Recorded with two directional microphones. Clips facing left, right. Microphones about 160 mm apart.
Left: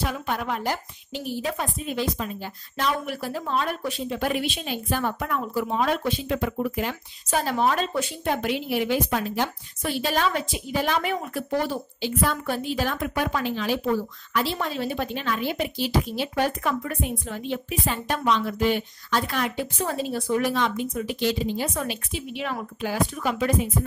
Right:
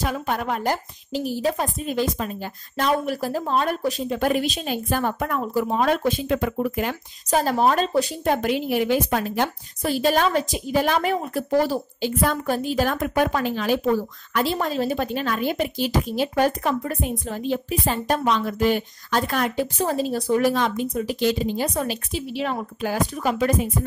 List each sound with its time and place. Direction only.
0.0 s a woman's voice: 45° right (ahead or behind)
7.2 s a woman's voice: 40° right (ahead or behind)